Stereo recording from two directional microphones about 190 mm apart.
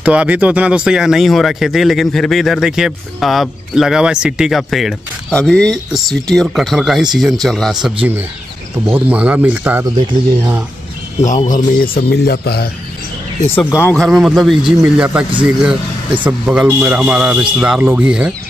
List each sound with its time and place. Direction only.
0.0 s speech: 5° right (ahead or behind)
7.8 s speech: 10° right (ahead or behind)
11.1 s a man's voice: 40° left (ahead or behind); by 12.6 s 55° left (ahead or behind)
13.7 s speech: 15° left (ahead or behind)
13.9 s speech: centre (ahead or behind)